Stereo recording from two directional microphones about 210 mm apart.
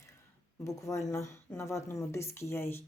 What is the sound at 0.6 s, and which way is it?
Speech, 15° left (ahead or behind).